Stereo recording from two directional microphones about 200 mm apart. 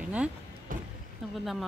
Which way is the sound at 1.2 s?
Centre (ahead or behind).